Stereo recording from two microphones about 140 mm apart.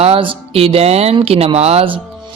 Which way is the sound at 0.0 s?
40° right (ahead or behind).